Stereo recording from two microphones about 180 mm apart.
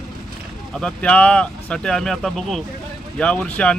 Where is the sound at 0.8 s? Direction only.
5° left (ahead or behind).